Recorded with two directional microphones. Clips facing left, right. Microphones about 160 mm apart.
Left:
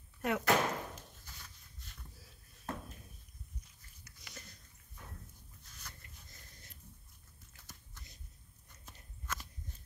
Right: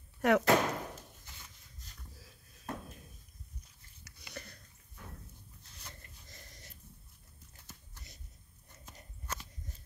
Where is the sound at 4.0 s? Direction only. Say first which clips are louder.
Right 6 dB; 60° right (ahead or behind).